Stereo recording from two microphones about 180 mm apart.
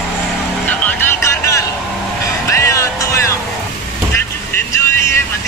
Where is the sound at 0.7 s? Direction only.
10° left (ahead or behind).